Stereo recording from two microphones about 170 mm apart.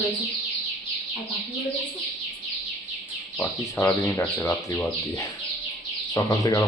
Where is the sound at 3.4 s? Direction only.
15° left (ahead or behind).